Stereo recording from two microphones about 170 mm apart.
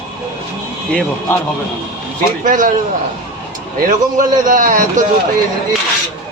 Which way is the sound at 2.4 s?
50° right (ahead or behind).